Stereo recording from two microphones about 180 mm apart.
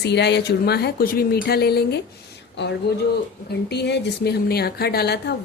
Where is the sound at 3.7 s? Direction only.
70° left (ahead or behind).